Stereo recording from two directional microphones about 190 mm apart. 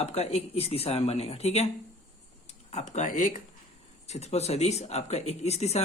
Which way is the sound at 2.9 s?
40° left (ahead or behind).